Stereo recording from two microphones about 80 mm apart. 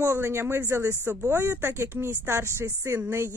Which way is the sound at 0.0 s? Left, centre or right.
Right.